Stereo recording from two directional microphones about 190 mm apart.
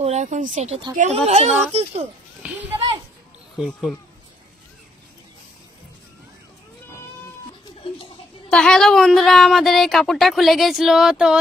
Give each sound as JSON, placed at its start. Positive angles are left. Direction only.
{"t": 0.0, "sound": "speech", "side_deg": -40}
{"t": 2.4, "sound": "a sound", "side_deg": -5}
{"t": 3.5, "sound": "a woman's voice", "side_deg": 0}
{"t": 8.5, "sound": "a woman's voice", "side_deg": 5}